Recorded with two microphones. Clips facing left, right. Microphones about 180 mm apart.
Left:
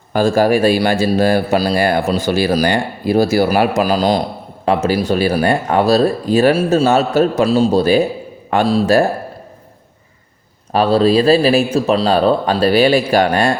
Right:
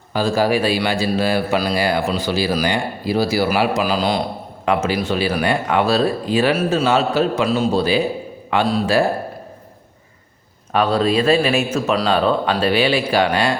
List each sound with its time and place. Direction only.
0.1 s speech: 50° left (ahead or behind)
1.7 s a man's voice: 50° left (ahead or behind)
6.5 s a man's voice: 30° left (ahead or behind)
6.8 s speech: 45° left (ahead or behind)
10.7 s a man's voice: 30° left (ahead or behind)